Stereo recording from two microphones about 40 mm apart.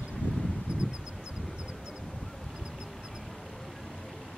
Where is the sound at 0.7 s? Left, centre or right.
Right.